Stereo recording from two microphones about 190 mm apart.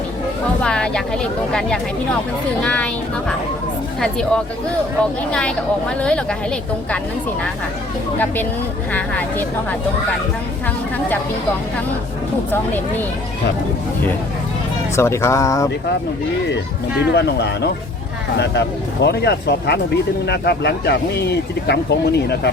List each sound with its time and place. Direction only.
0.6 s speech: 5° left (ahead or behind)
8.9 s speech: 10° left (ahead or behind)
14.9 s speech: 15° left (ahead or behind)
17.1 s speech: 60° left (ahead or behind)